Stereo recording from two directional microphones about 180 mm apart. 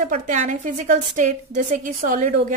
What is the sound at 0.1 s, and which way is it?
A woman's voice, 40° right (ahead or behind).